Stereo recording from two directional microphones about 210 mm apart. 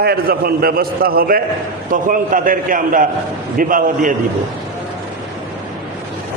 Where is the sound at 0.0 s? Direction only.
45° right (ahead or behind).